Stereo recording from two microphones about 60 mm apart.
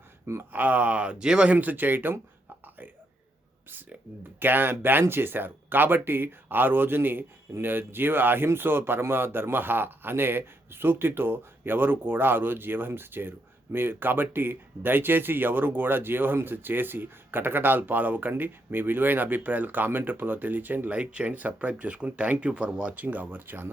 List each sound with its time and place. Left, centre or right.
0.5 s speech: right
1.5 s speech: right
4.4 s speech: right